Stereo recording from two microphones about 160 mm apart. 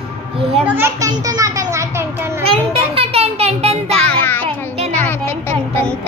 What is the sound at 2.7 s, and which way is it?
Music, 35° right (ahead or behind).